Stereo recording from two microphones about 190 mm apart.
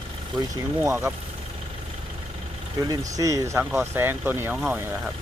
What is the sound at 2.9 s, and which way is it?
Speech, 15° right (ahead or behind).